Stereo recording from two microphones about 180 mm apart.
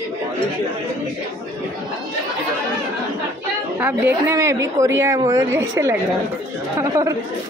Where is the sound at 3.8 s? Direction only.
10° right (ahead or behind).